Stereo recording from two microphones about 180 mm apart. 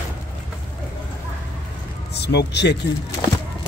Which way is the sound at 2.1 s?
65° left (ahead or behind).